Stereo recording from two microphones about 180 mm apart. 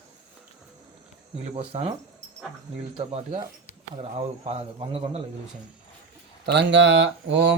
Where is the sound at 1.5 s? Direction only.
30° right (ahead or behind).